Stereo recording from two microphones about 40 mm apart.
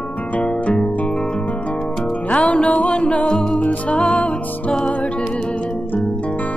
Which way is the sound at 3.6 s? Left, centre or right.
Left.